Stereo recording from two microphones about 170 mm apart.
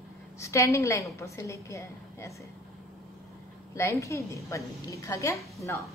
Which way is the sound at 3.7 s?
15° left (ahead or behind).